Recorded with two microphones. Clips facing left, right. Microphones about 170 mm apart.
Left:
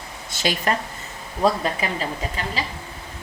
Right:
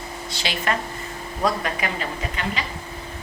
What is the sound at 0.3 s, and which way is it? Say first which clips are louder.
Speech: left 3 dB; 40° left (ahead or behind).